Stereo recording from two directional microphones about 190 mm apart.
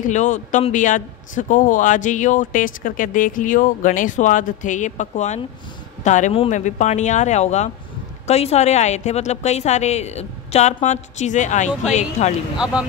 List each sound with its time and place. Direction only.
0.0 s a man's voice: 40° left (ahead or behind)